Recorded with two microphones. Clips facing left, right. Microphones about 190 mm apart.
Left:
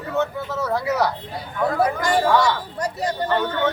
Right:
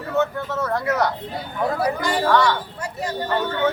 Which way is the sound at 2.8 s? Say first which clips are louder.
Left 4 dB; 35° left (ahead or behind).